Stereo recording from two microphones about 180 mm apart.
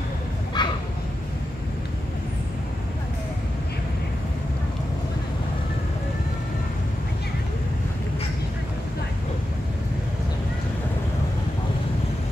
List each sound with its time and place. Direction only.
0.6 s bow-wow: 25° left (ahead or behind)